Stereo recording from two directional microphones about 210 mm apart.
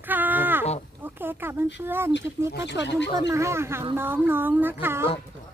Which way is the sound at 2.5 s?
55° left (ahead or behind).